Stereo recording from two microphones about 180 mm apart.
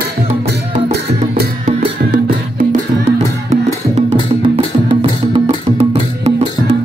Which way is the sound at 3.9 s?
30° right (ahead or behind).